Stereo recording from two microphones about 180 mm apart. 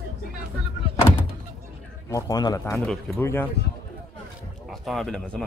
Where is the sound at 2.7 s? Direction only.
10° left (ahead or behind).